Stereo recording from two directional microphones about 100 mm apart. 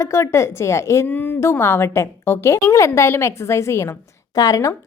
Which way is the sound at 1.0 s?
20° left (ahead or behind).